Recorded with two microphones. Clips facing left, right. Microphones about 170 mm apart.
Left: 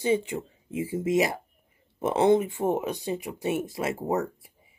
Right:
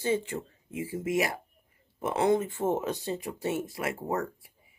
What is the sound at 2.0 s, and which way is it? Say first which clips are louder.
Music: left 4 dB; 25° left (ahead or behind).